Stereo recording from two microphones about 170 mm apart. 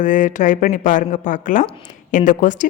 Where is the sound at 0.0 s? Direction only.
50° left (ahead or behind).